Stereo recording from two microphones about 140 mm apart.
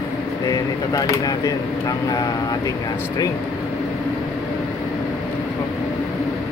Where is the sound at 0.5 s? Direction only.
25° left (ahead or behind).